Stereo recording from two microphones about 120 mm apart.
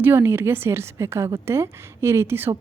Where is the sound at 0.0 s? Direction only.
20° right (ahead or behind).